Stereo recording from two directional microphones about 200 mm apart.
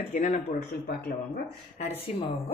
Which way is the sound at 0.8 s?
55° left (ahead or behind).